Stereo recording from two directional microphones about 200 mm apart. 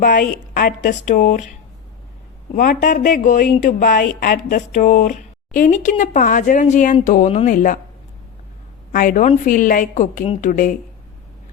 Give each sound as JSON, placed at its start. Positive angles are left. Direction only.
{"t": 0.0, "sound": "speech", "side_deg": 45}
{"t": 2.6, "sound": "speech", "side_deg": 40}
{"t": 8.9, "sound": "speech", "side_deg": 45}